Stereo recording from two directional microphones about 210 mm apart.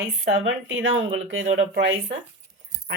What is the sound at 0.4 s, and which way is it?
Speech, 65° right (ahead or behind).